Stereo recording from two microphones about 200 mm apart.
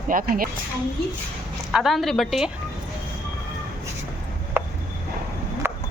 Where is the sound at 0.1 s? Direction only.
45° right (ahead or behind).